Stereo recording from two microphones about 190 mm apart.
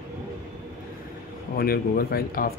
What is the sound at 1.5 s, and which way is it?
Speech, 50° left (ahead or behind).